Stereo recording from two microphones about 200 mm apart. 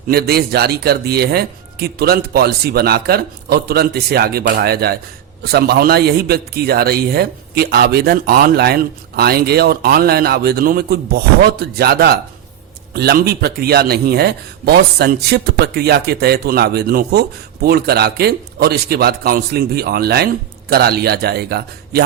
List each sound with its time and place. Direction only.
0.1 s speech: 50° right (ahead or behind)